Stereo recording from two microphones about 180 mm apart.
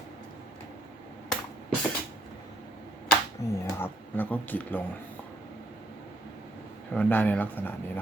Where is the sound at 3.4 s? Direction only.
15° left (ahead or behind).